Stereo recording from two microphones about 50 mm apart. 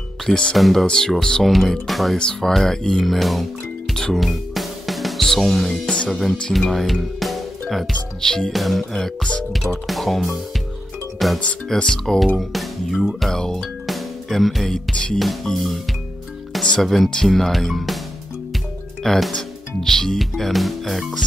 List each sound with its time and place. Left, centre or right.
0.3 s speech: centre
0.6 s speech: centre
0.8 s speech: centre
2.1 s speech: centre
3.9 s music: centre
4.2 s music: centre
6.0 s speech: centre
8.2 s speech: centre
13.6 s music: centre
14.9 s music: centre
15.4 s speech: centre
16.8 s speech: centre
19.0 s speech: centre